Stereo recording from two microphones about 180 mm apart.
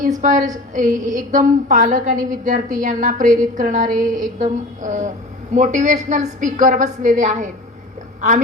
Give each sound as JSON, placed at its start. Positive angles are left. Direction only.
{"t": 0.2, "sound": "a woman's voice", "side_deg": -45}